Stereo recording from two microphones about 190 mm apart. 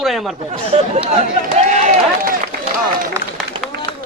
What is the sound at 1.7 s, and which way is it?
Run, 40° right (ahead or behind).